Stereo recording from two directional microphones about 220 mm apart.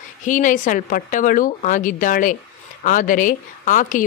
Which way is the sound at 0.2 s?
35° left (ahead or behind).